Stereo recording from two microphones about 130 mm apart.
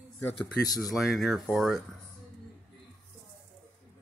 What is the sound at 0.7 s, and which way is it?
Speech, centre (ahead or behind).